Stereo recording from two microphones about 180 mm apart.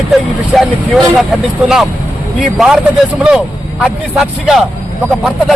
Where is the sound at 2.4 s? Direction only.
Centre (ahead or behind).